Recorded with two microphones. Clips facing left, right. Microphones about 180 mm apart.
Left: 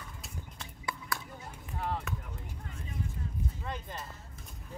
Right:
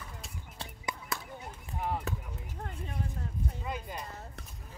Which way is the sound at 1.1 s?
20° right (ahead or behind).